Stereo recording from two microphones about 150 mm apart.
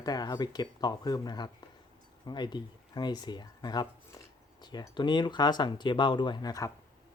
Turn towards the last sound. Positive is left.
turn(degrees=25)  # may be behind; listen again after turning